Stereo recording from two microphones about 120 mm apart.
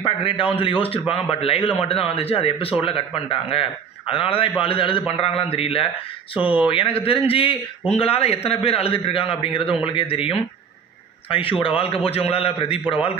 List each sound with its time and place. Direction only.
0.0 s a man's voice: 45° left (ahead or behind)